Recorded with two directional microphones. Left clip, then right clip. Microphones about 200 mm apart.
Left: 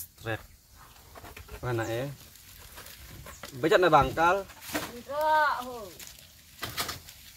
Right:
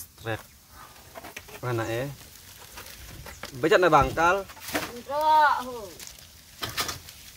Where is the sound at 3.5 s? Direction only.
10° right (ahead or behind).